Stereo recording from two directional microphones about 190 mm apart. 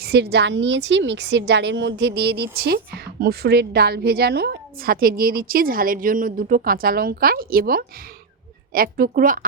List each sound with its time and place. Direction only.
0.0 s a woman's voice: 60° right (ahead or behind)